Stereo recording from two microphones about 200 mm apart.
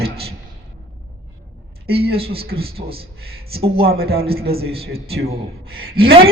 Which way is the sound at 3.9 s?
50° right (ahead or behind).